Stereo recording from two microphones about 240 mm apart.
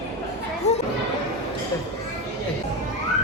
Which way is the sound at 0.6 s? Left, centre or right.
Left.